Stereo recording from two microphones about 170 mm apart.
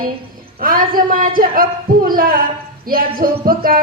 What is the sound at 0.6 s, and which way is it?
A woman's voice, 55° right (ahead or behind).